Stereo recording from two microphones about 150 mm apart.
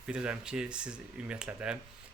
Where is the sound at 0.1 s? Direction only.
5° right (ahead or behind).